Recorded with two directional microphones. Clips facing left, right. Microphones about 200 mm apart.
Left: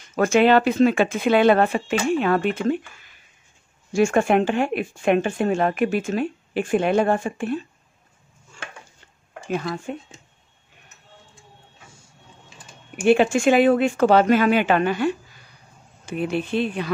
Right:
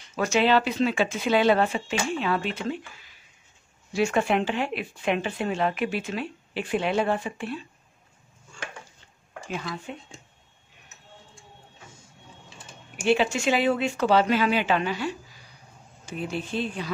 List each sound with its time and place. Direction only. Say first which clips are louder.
0.1 s speech: left 6 dB; 50° left (ahead or behind)
9.5 s speech: left 7 dB; 50° left (ahead or behind)
13.0 s speech: left 6 dB; 50° left (ahead or behind)